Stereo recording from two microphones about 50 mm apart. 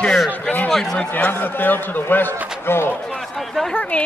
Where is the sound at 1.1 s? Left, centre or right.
Left.